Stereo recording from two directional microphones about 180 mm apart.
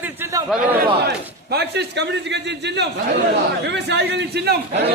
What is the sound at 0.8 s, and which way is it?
A man's voice, 65° right (ahead or behind).